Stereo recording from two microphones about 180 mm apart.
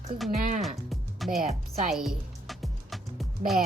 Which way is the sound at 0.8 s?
Centre (ahead or behind).